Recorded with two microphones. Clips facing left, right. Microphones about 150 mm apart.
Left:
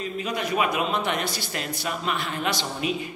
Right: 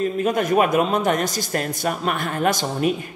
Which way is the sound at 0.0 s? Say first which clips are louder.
Right 8 dB; 50° right (ahead or behind).